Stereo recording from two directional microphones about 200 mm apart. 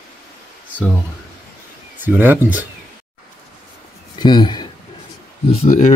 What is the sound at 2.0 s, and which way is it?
Speech, 10° right (ahead or behind).